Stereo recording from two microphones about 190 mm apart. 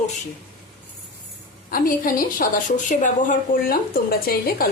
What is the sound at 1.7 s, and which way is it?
A woman's voice, 50° left (ahead or behind).